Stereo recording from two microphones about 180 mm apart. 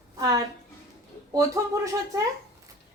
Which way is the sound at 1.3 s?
20° right (ahead or behind).